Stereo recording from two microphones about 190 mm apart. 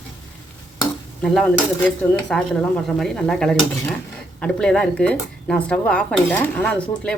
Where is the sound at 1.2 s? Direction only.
5° left (ahead or behind).